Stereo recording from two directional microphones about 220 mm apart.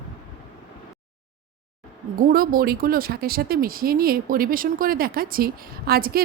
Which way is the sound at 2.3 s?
40° right (ahead or behind).